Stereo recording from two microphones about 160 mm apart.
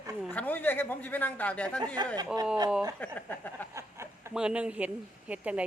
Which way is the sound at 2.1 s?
25° right (ahead or behind).